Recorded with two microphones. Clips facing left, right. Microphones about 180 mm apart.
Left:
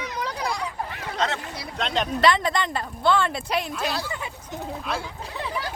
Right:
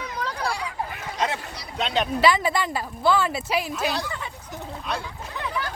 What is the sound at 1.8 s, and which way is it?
Speech, 5° right (ahead or behind).